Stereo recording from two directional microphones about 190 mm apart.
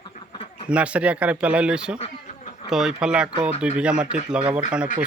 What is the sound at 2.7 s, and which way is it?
Speech, 5° right (ahead or behind).